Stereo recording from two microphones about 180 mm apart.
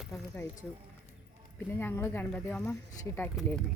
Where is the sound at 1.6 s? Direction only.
10° left (ahead or behind).